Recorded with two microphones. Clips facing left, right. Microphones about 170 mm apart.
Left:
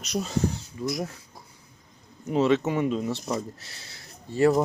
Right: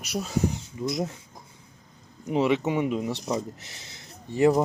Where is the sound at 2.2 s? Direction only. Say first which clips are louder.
Left 1 dB; 15° right (ahead or behind).